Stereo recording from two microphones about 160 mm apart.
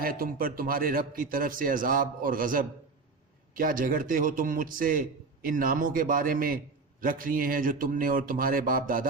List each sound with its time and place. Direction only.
0.0 s a man's voice: 65° right (ahead or behind)